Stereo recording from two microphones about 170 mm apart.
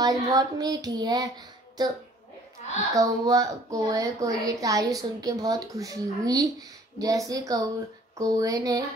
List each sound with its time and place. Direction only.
0.0 s speech: 20° right (ahead or behind)
2.9 s speech: 20° right (ahead or behind)